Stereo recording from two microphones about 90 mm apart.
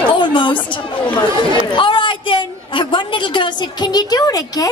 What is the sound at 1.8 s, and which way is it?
A woman's voice, 70° left (ahead or behind).